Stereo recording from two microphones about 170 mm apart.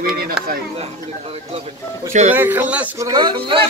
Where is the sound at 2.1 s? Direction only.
40° right (ahead or behind).